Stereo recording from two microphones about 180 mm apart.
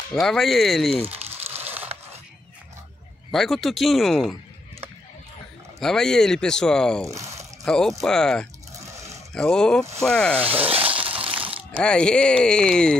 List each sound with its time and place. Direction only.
0.1 s speech: 5° left (ahead or behind)
1.5 s a sound: 15° right (ahead or behind)
3.3 s speech: centre (ahead or behind)
5.8 s speech: 5° left (ahead or behind)
7.1 s speech: 15° right (ahead or behind)
7.6 s speech: 5° left (ahead or behind)
8.8 s a sound: 15° right (ahead or behind)
9.3 s speech: 5° left (ahead or behind)
10.7 s a sound: 30° right (ahead or behind)
11.8 s speech: 5° left (ahead or behind)